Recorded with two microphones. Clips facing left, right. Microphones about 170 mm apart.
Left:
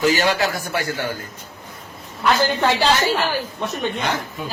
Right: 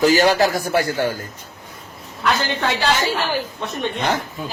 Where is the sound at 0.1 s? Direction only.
40° right (ahead or behind).